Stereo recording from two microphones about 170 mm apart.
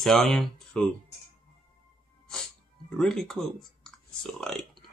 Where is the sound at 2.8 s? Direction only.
5° left (ahead or behind).